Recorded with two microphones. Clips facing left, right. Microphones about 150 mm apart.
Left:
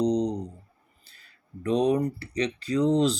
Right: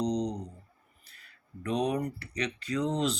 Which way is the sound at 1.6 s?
30° left (ahead or behind).